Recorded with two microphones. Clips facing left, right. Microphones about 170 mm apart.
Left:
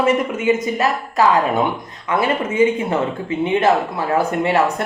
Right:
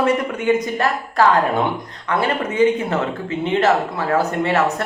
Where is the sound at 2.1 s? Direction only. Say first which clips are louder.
Left 1 dB; 25° left (ahead or behind).